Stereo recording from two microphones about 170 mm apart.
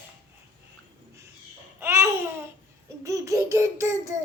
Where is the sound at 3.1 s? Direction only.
20° right (ahead or behind).